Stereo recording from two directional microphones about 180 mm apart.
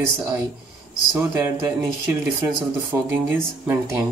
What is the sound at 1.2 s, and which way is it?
Speech, 10° right (ahead or behind).